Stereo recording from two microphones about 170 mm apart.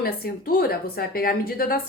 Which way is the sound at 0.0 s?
60° left (ahead or behind).